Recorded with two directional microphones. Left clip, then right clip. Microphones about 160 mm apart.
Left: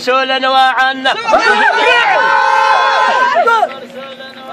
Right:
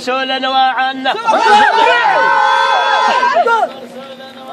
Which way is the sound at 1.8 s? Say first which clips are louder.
Even; 20° left (ahead or behind).